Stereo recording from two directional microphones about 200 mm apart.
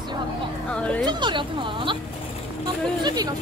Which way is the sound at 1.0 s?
25° right (ahead or behind).